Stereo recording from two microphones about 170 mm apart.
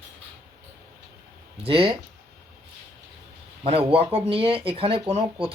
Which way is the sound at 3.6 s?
35° right (ahead or behind).